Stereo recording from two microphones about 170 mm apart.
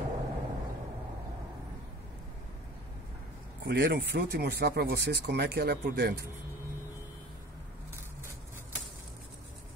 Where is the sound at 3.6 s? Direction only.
75° right (ahead or behind).